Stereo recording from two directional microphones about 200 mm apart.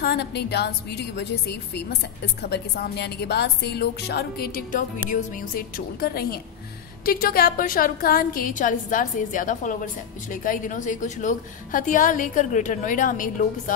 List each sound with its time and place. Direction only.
0.0 s a woman's voice: 55° left (ahead or behind)